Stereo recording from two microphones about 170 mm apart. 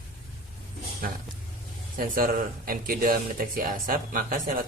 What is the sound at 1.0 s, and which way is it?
Speech, 55° right (ahead or behind).